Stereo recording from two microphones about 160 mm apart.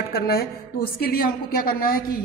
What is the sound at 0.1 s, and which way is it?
A woman's voice, 75° left (ahead or behind).